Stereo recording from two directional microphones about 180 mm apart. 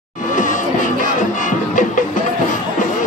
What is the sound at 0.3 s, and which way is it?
Music, 45° left (ahead or behind).